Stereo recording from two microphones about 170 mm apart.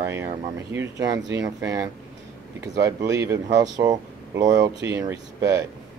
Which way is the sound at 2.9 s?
20° right (ahead or behind).